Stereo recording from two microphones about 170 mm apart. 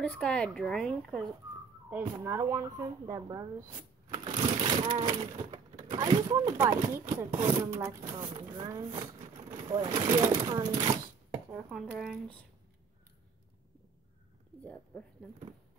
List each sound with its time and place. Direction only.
0.0 s speech: 5° left (ahead or behind)
1.9 s speech: 10° right (ahead or behind)
4.1 s a sound: 25° right (ahead or behind)
5.9 s speech: 20° right (ahead or behind)
8.1 s speech: 30° right (ahead or behind)
11.5 s speech: 10° right (ahead or behind)
14.6 s a woman's voice: 5° left (ahead or behind)